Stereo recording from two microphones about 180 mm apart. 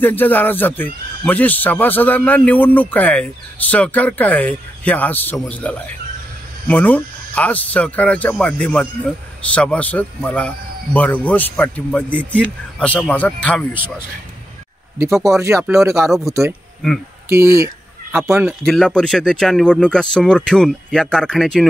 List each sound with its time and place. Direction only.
0.0 s speech: 10° left (ahead or behind)
15.2 s speech: 15° right (ahead or behind)
17.3 s speech: 15° right (ahead or behind)
18.7 s speech: 5° left (ahead or behind)